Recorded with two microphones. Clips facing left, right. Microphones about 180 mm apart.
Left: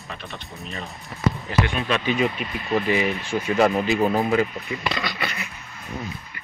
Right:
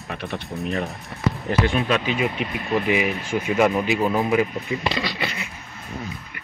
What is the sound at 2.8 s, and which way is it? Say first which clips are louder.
Speech: right 1 dB; 10° right (ahead or behind).